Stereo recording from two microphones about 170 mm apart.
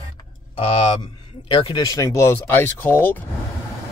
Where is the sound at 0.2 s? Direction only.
35° left (ahead or behind); by 3.3 s 10° left (ahead or behind).